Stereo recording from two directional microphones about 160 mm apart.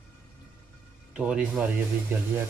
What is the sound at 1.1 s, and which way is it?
Speech, 5° right (ahead or behind).